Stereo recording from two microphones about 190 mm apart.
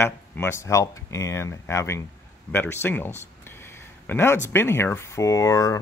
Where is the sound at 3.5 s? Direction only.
10° left (ahead or behind).